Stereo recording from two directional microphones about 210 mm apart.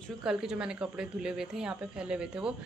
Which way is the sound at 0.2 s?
Centre (ahead or behind).